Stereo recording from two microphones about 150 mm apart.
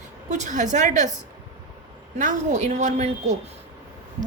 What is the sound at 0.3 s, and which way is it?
Speech, 55° right (ahead or behind).